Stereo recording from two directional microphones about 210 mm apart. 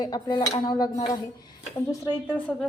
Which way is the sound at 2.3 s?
5° left (ahead or behind).